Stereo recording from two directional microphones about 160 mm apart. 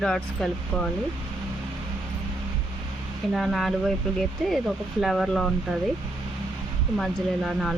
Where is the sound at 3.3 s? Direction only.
Centre (ahead or behind).